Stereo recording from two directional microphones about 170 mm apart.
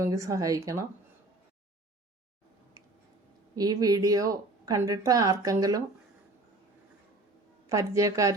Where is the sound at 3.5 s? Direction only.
20° right (ahead or behind).